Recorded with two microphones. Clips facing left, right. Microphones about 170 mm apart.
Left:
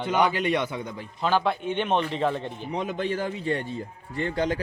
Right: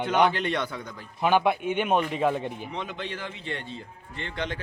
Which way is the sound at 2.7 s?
40° left (ahead or behind).